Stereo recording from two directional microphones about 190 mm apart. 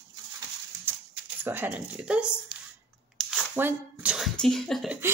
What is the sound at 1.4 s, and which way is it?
Speech, 10° right (ahead or behind).